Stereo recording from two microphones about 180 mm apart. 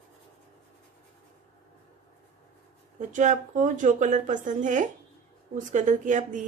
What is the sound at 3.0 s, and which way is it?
A woman's voice, 45° right (ahead or behind).